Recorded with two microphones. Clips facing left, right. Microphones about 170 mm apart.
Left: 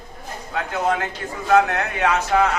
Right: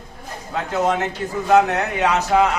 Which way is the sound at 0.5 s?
25° right (ahead or behind).